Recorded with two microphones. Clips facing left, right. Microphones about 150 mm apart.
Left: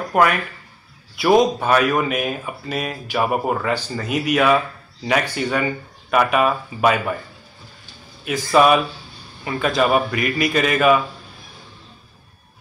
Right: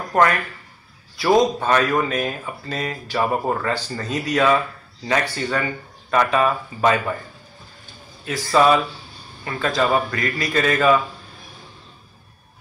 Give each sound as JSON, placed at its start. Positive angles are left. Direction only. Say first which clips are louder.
{"t": 0.1, "sound": "speech", "louder": "even", "side_deg": 15}
{"t": 8.3, "sound": "speech", "louder": "left 1 dB", "side_deg": 15}